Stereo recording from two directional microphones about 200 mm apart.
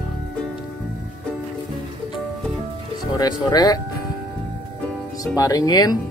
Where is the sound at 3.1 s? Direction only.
20° left (ahead or behind).